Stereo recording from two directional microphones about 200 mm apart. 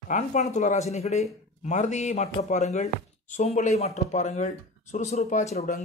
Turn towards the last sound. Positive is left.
turn(degrees=35)  # may be behind; listen again after turning